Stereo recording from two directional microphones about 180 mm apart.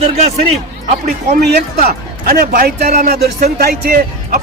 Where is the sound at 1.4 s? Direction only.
60° right (ahead or behind).